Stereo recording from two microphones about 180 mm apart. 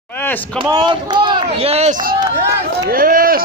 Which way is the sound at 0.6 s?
25° right (ahead or behind).